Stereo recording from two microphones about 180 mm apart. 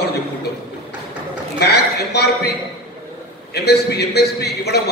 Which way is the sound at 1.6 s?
65° left (ahead or behind).